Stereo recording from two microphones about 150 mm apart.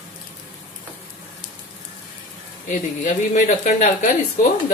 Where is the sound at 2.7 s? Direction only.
60° left (ahead or behind).